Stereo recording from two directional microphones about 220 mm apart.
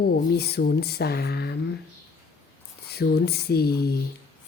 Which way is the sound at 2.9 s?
45° left (ahead or behind).